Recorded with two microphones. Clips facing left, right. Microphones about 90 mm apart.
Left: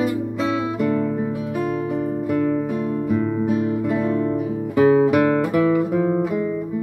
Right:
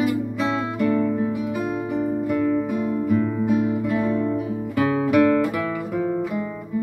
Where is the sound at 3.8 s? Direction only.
5° left (ahead or behind).